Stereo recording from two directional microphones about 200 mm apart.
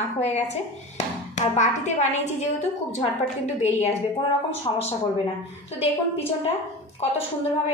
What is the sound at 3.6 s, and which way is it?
Speech, 35° left (ahead or behind).